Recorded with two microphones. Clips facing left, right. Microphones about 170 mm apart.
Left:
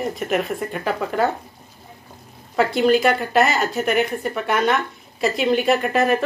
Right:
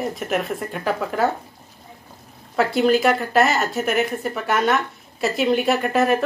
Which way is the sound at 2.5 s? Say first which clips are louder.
Left 1 dB; centre (ahead or behind).